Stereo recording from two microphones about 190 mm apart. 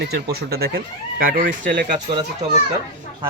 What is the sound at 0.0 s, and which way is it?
Speech, 55° right (ahead or behind).